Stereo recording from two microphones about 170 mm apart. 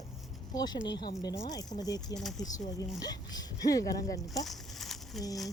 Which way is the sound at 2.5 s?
20° left (ahead or behind).